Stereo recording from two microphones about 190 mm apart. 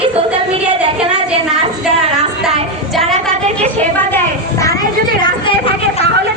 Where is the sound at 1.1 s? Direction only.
5° right (ahead or behind).